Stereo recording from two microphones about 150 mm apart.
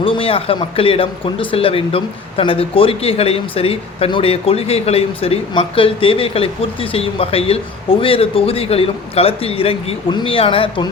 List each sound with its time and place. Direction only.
0.0 s speech: 35° left (ahead or behind)